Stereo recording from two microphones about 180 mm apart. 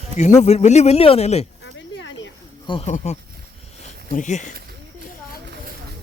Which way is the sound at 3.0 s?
40° left (ahead or behind).